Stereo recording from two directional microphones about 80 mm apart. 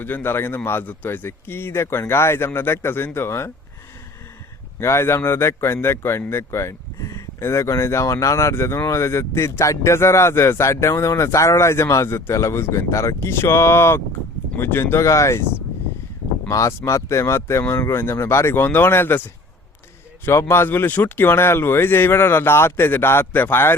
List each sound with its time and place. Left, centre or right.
0.0 s speech: left
4.8 s speech: left
16.5 s speech: left
20.2 s speech: left